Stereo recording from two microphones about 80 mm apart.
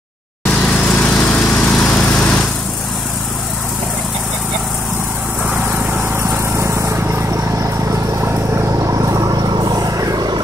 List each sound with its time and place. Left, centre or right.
0.6 s lawn mower: centre
6.6 s a sound: right
8.8 s vehicle: right